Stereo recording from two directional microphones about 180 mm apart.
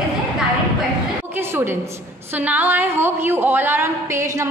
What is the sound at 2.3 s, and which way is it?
A woman's voice, 10° right (ahead or behind).